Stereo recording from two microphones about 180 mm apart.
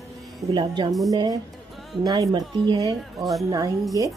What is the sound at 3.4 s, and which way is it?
Speech, 20° right (ahead or behind).